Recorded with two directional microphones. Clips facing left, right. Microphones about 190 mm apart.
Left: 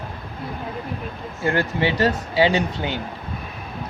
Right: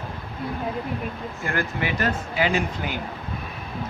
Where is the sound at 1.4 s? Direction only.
30° left (ahead or behind).